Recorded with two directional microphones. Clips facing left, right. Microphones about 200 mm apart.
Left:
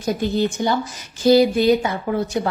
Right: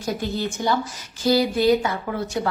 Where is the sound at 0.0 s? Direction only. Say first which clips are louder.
Left 5 dB; 20° left (ahead or behind).